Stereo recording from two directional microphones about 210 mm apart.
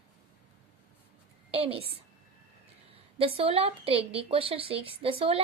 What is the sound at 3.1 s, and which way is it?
A woman's voice, 25° right (ahead or behind).